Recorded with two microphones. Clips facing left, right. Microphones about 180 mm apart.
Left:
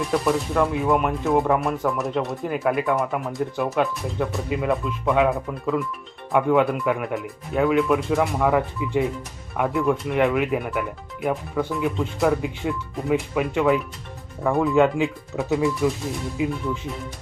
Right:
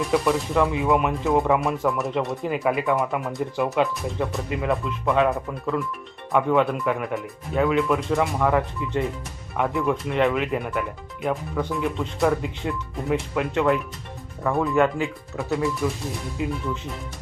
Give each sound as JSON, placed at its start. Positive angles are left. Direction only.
{"t": 0.0, "sound": "speech", "side_deg": 0}
{"t": 14.8, "sound": "speech", "side_deg": 15}
{"t": 16.5, "sound": "speech", "side_deg": 0}